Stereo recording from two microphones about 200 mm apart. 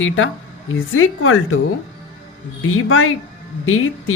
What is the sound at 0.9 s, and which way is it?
Speech, 90° left.